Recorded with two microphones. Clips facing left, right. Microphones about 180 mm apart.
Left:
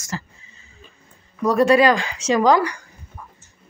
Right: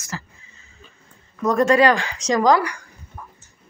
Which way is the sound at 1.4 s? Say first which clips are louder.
Left 1 dB; 10° left (ahead or behind).